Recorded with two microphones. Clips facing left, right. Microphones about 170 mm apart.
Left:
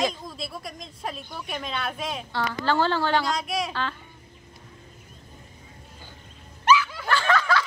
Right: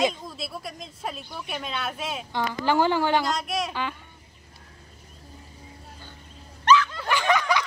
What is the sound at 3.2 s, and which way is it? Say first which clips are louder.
Speech: even; centre (ahead or behind).